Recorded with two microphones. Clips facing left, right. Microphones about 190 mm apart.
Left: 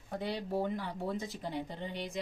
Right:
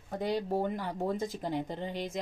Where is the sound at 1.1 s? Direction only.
45° right (ahead or behind).